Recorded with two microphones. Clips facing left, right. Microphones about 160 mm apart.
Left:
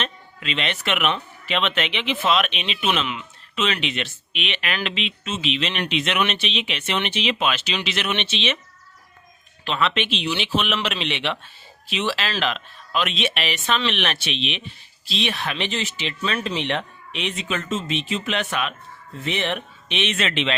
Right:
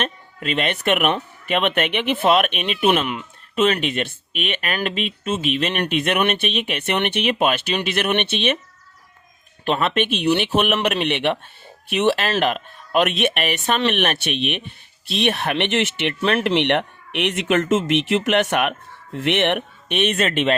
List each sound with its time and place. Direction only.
0.0 s speech: 50° right (ahead or behind)
9.6 s speech: 50° right (ahead or behind)